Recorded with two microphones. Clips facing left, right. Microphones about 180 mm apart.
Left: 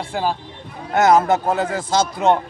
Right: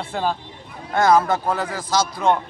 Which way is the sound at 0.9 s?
20° left (ahead or behind).